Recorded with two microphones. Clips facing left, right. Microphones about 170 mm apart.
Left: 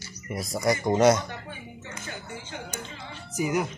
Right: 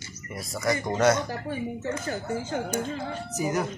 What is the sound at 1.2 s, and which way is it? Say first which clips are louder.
Speech: right 9 dB; 40° right (ahead or behind).